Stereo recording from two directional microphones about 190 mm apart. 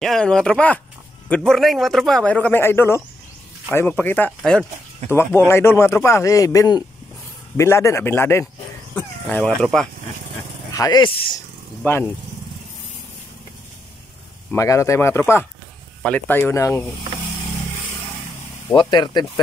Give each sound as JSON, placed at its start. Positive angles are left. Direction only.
{"t": 0.0, "sound": "speech", "side_deg": 0}
{"t": 10.7, "sound": "speech", "side_deg": 20}
{"t": 11.8, "sound": "speech", "side_deg": 10}
{"t": 14.5, "sound": "speech", "side_deg": 15}
{"t": 18.8, "sound": "speech", "side_deg": 25}